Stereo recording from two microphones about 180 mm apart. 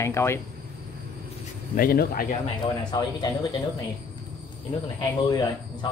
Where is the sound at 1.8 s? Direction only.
55° left (ahead or behind).